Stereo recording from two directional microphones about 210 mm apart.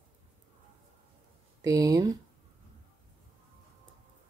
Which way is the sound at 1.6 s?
15° right (ahead or behind).